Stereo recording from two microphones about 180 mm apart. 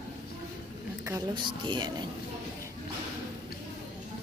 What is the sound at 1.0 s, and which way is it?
A woman's voice, 20° right (ahead or behind).